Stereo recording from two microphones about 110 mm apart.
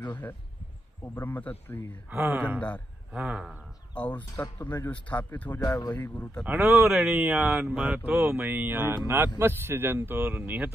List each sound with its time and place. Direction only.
1.1 s speech: 15° left (ahead or behind)
2.0 s speech: 15° right (ahead or behind)
3.9 s speech: 15° left (ahead or behind)
5.8 s speech: 40° left (ahead or behind)
6.0 s speech: 15° left (ahead or behind)
6.4 s speech: 15° right (ahead or behind)